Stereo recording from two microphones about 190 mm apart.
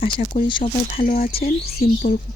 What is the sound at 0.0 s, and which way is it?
Speech, 30° left (ahead or behind).